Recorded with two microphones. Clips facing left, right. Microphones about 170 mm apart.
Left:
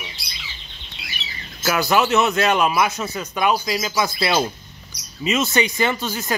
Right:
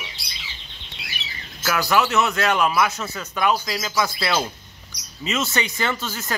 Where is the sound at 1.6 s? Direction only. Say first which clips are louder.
Left 2 dB; 20° left (ahead or behind).